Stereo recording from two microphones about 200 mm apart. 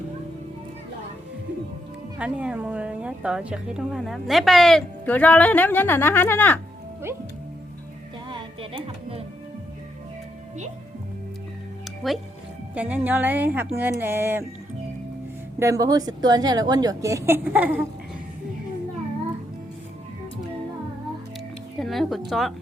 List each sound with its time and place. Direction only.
2.1 s a woman's voice: 5° right (ahead or behind); by 6.6 s 10° left (ahead or behind)
8.3 s music: 25° right (ahead or behind)
11.9 s music: centre (ahead or behind)
12.7 s a woman's voice: 10° right (ahead or behind)
15.5 s a woman's voice: 15° right (ahead or behind)
21.8 s a sound: centre (ahead or behind)
22.3 s a woman's voice: centre (ahead or behind)